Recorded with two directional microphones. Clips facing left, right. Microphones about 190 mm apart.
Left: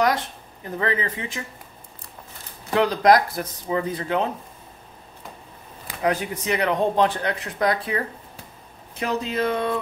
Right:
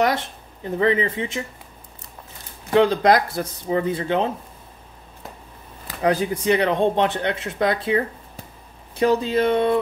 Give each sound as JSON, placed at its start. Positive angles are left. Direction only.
{"t": 0.7, "sound": "speech", "side_deg": -25}
{"t": 2.7, "sound": "speech", "side_deg": -25}
{"t": 6.0, "sound": "speech", "side_deg": -30}
{"t": 9.0, "sound": "speech", "side_deg": -30}